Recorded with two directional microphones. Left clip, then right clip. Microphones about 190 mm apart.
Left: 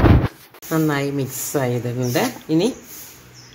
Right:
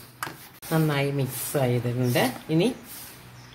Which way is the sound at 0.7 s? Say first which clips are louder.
Left 5 dB; 30° left (ahead or behind).